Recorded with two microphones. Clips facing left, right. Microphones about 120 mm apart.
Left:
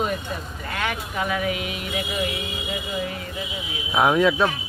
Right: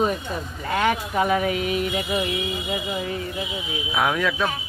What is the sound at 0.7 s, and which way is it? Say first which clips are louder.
Speech: right 6 dB; 35° right (ahead or behind).